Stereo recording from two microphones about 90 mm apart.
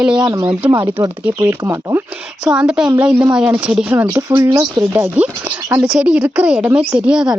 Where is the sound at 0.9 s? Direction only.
25° right (ahead or behind).